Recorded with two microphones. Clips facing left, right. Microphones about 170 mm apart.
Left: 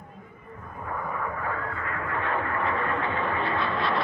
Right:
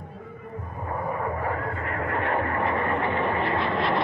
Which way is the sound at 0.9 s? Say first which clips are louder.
Right 4 dB; 30° right (ahead or behind).